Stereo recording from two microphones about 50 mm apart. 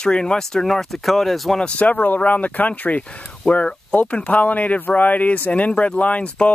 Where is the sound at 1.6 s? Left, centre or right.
Left.